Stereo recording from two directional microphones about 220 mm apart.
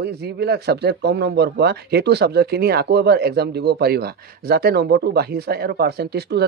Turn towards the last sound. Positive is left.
turn(degrees=-45)  # may be behind; listen again after turning